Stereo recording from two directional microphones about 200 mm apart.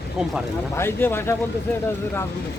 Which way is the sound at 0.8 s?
10° left (ahead or behind).